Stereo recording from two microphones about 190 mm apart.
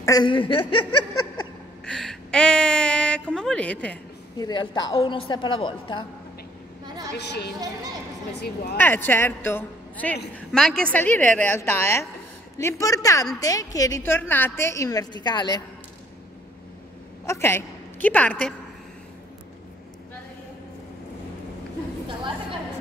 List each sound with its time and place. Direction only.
0.0 s a woman's voice: 20° left (ahead or behind)
1.9 s a woman's voice: 5° left (ahead or behind)
4.4 s a woman's voice: 20° left (ahead or behind)
7.2 s a woman's voice: 60° left (ahead or behind)
8.7 s a woman's voice: 10° left (ahead or behind)
17.3 s a woman's voice: 15° left (ahead or behind)
22.0 s chatter: 25° right (ahead or behind)